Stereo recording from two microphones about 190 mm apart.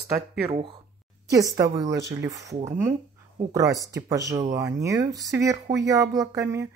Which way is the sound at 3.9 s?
15° right (ahead or behind).